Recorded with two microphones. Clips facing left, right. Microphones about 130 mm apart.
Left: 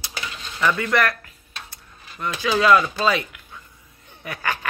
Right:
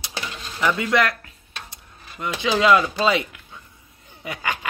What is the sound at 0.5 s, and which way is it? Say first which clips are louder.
Dishes: even; 15° right (ahead or behind).